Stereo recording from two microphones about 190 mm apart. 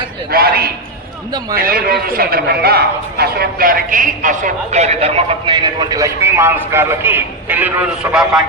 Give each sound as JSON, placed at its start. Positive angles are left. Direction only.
{"t": 0.3, "sound": "a man's voice", "side_deg": -55}